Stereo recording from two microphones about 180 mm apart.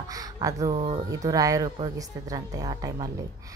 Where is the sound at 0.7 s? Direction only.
30° right (ahead or behind).